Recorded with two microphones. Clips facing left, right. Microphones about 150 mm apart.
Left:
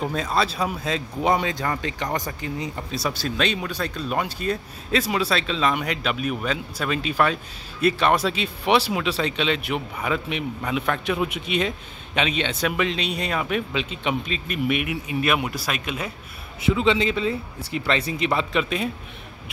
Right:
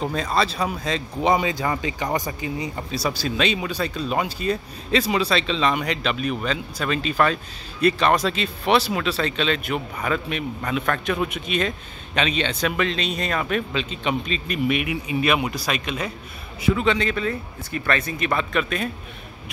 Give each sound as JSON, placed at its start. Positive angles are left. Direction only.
{"t": 0.0, "sound": "speech", "side_deg": 5}
{"t": 16.7, "sound": "speech", "side_deg": 25}